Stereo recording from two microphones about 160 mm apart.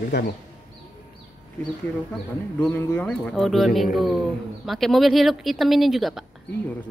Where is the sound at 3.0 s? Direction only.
5° left (ahead or behind).